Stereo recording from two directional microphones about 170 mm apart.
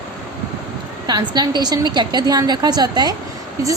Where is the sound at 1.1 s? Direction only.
25° right (ahead or behind).